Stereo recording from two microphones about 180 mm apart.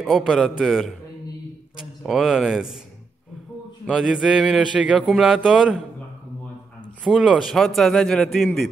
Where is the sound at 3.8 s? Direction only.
Centre (ahead or behind).